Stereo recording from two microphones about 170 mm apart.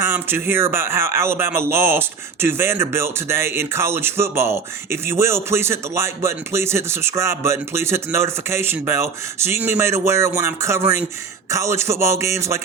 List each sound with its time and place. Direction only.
0.0 s speech: 15° right (ahead or behind)